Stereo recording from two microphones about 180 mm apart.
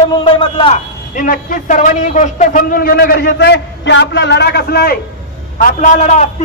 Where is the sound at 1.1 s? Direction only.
50° left (ahead or behind).